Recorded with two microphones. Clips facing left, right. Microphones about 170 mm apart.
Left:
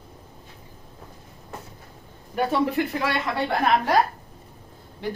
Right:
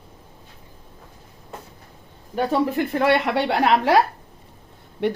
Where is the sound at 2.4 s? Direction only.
40° right (ahead or behind); by 4.0 s 85° right.